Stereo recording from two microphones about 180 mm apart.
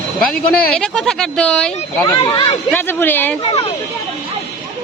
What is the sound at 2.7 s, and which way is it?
Speech, 10° left (ahead or behind).